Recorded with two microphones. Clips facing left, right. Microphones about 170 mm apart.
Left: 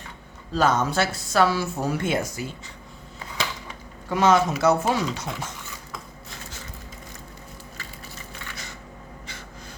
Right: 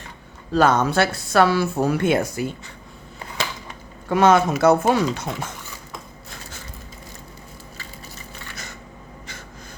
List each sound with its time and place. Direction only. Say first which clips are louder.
0.5 s speech: right 4 dB; 60° right (ahead or behind)
4.1 s speech: right 3 dB; 55° right (ahead or behind)